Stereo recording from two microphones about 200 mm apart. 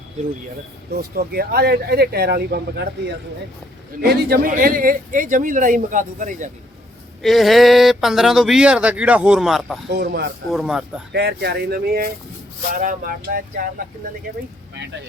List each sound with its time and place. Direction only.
0.9 s speech: 50° right (ahead or behind)
4.0 s speech: 55° right (ahead or behind)
7.2 s speech: centre (ahead or behind)
9.8 s speech: 55° right (ahead or behind)
10.5 s speech: 5° right (ahead or behind)
11.1 s speech: 55° right (ahead or behind)